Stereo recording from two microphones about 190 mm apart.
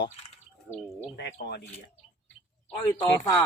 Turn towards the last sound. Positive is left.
turn(degrees=20)  # may be behind; listen again after turning